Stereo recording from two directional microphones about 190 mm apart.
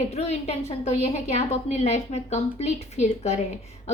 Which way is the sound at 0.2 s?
35° left (ahead or behind).